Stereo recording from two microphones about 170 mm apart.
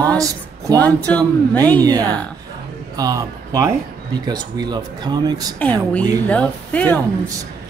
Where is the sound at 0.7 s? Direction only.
10° left (ahead or behind).